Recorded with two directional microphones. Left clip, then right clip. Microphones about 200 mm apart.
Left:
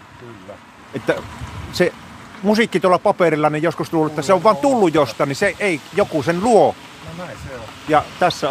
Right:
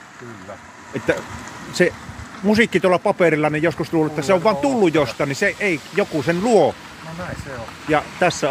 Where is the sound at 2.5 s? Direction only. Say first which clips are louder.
Left 1 dB; 10° left (ahead or behind).